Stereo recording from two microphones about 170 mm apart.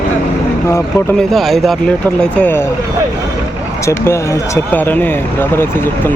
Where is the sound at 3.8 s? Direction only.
15° left (ahead or behind).